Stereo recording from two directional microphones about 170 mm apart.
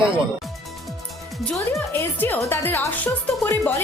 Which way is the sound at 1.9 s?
15° left (ahead or behind).